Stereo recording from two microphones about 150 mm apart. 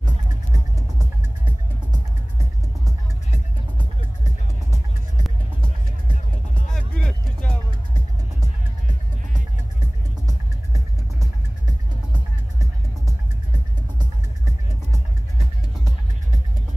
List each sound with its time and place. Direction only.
6.7 s music: 5° left (ahead or behind)
10.2 s music: 25° right (ahead or behind)